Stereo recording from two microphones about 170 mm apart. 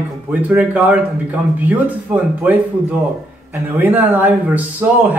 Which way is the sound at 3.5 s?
10° right (ahead or behind).